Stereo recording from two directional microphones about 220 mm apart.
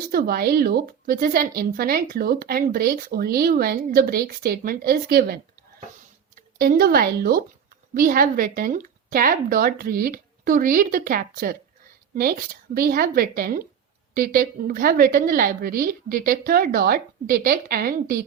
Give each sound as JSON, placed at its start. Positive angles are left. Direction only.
{"t": 0.1, "sound": "a woman's voice", "side_deg": -45}